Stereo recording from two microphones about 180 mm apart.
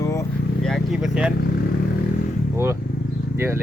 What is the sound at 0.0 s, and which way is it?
Vehicle, 20° left (ahead or behind).